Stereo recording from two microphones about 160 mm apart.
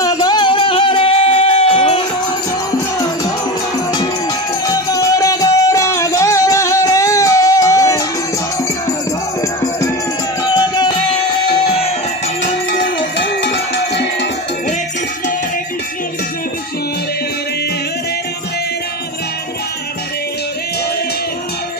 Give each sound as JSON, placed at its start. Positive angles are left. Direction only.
{"t": 0.0, "sound": "music", "side_deg": 25}
{"t": 4.6, "sound": "music", "side_deg": 20}
{"t": 9.4, "sound": "music", "side_deg": 20}
{"t": 12.7, "sound": "music", "side_deg": 90}